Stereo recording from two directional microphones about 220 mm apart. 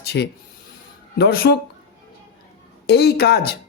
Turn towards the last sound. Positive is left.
turn(degrees=45)  # may be behind; listen again after turning